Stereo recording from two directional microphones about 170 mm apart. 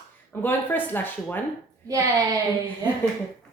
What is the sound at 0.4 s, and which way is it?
Speech, 10° left (ahead or behind).